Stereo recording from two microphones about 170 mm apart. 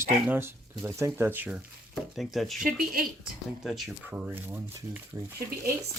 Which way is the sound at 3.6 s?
Centre (ahead or behind).